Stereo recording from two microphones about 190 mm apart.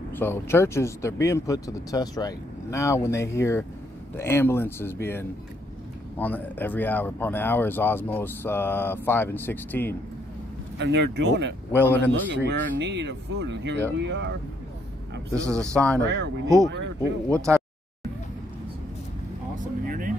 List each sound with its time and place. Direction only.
0.1 s speech: 10° left (ahead or behind)
6.1 s speech: 10° left (ahead or behind)
10.8 s speech: 65° right (ahead or behind)
15.3 s speech: 15° right (ahead or behind)
15.7 s speech: 5° left (ahead or behind)
16.6 s speech: 70° right (ahead or behind)
17.3 s speech: 15° right (ahead or behind)
19.5 s vehicle: 45° right (ahead or behind)